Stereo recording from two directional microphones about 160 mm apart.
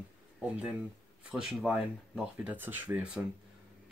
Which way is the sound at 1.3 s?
5° right (ahead or behind).